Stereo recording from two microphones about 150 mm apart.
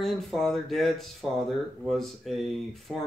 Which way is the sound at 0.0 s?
Centre (ahead or behind).